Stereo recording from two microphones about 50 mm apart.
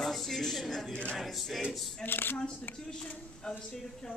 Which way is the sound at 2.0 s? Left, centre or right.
Left.